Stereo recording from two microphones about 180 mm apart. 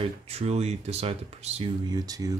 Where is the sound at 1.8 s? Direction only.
20° right (ahead or behind).